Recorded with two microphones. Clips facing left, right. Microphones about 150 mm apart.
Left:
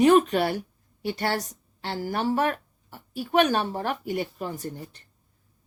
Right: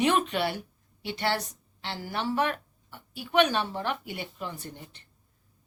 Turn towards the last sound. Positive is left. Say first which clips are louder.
# left 7 dB
turn(degrees=40)  # may be behind; listen again after turning